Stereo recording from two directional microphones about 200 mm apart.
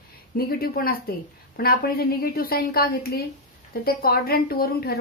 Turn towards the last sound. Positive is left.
turn(degrees=50)  # may be behind; listen again after turning